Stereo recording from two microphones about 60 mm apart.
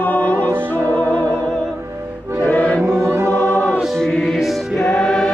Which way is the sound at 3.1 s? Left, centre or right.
Right.